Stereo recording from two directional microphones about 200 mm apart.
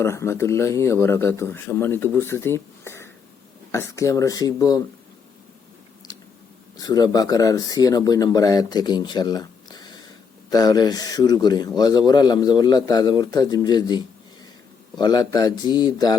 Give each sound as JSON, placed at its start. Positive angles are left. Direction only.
{"t": 0.0, "sound": "a man's voice", "side_deg": 15}
{"t": 6.7, "sound": "speech", "side_deg": 20}